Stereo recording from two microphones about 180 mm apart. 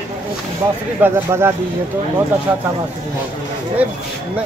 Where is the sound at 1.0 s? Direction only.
10° right (ahead or behind).